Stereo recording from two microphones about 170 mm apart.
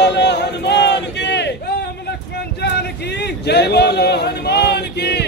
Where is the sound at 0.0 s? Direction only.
80° left.